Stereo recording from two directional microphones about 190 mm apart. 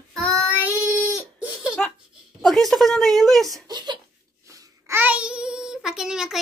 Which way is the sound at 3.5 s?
20° right (ahead or behind).